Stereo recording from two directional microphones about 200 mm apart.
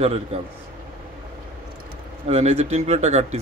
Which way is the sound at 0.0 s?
30° right (ahead or behind).